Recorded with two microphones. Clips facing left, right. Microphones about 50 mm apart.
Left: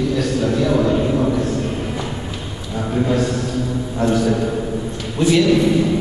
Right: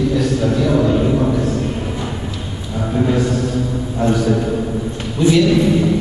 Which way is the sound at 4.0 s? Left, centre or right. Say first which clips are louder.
Right 1 dB; centre.